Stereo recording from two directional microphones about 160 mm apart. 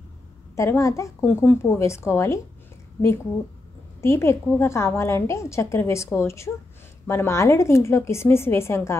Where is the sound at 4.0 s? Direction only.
15° left (ahead or behind).